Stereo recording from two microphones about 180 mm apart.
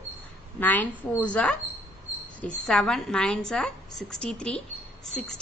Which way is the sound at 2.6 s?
5° left (ahead or behind).